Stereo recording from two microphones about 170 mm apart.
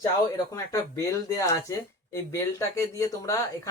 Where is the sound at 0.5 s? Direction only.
20° left (ahead or behind).